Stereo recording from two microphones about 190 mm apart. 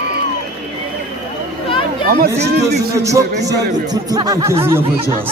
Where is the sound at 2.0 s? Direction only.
55° right (ahead or behind).